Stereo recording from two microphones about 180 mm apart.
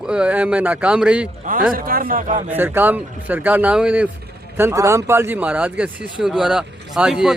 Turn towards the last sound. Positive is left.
turn(degrees=-5)  # may be behind; listen again after turning